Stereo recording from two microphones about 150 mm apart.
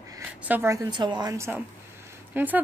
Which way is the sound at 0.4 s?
15° right (ahead or behind).